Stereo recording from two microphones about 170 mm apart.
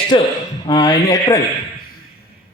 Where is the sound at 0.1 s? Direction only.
30° left (ahead or behind).